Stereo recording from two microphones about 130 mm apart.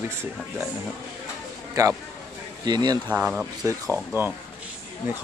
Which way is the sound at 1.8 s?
25° right (ahead or behind).